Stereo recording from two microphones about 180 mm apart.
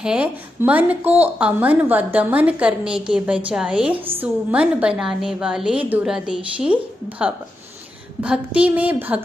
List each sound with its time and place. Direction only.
0.0 s a woman's voice: 5° right (ahead or behind)